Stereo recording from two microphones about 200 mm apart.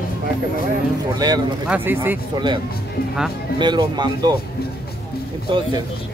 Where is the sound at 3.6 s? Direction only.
20° right (ahead or behind).